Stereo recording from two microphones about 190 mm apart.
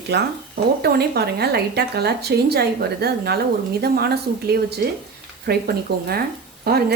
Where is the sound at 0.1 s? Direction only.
60° right (ahead or behind).